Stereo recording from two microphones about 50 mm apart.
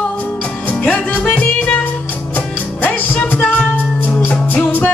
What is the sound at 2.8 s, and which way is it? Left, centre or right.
Music, left.